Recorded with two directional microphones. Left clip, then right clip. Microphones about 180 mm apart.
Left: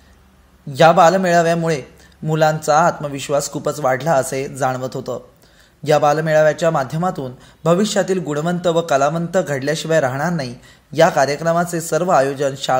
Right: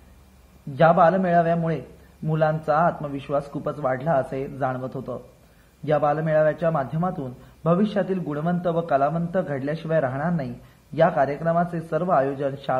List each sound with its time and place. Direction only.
0.7 s a man's voice: 50° left (ahead or behind)